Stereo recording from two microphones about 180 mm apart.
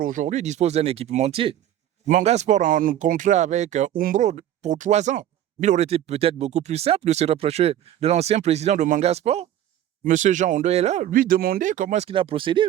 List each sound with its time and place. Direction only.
0.0 s speech: 45° right (ahead or behind); by 12.6 s 30° right (ahead or behind)